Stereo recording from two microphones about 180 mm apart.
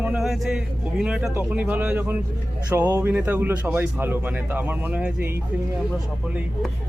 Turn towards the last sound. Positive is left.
turn(degrees=-10)  # may be behind; listen again after turning